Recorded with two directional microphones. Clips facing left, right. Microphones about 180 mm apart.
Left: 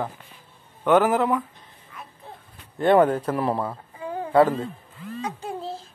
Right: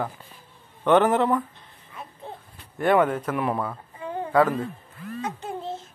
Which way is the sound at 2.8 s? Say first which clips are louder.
Left 3 dB; 30° left (ahead or behind).